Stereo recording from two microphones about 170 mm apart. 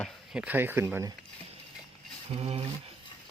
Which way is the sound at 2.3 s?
35° right (ahead or behind).